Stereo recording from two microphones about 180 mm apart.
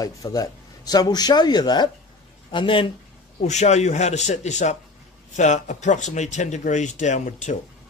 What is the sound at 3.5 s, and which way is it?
Speech, 40° left (ahead or behind).